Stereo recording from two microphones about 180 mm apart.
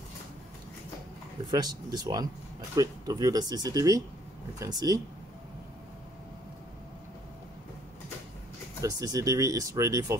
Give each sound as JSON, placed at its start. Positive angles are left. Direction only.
{"t": 1.5, "sound": "speech", "side_deg": -20}
{"t": 8.8, "sound": "speech", "side_deg": -20}